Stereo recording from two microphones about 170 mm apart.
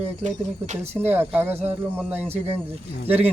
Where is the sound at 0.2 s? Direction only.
45° right (ahead or behind).